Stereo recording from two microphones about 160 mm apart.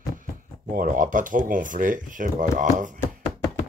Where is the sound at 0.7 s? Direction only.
55° right (ahead or behind).